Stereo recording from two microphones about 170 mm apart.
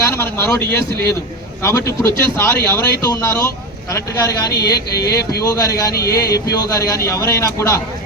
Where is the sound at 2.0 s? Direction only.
15° left (ahead or behind).